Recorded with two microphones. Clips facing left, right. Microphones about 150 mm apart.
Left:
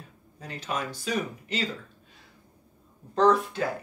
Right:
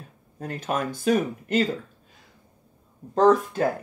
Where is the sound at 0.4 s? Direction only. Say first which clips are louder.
Right 5 dB; 50° right (ahead or behind).